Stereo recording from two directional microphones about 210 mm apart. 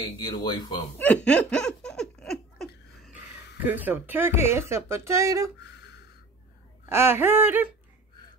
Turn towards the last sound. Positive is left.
turn(degrees=-10)  # may be behind; listen again after turning